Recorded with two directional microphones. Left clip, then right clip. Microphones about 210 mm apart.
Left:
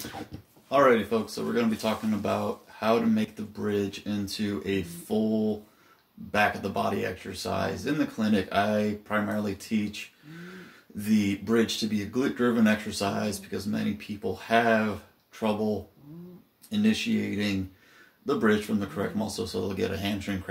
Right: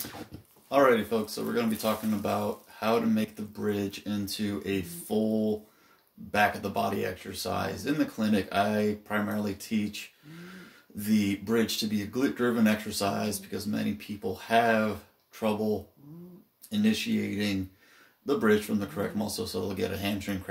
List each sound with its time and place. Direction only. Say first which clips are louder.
0.7 s speech: left 2 dB; 15° right (ahead or behind)
6.3 s speech: left 1 dB; 15° right (ahead or behind)
16.7 s speech: left 2 dB; 15° right (ahead or behind)